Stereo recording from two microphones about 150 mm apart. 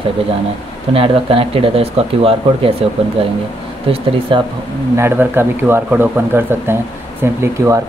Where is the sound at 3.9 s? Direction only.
35° right (ahead or behind).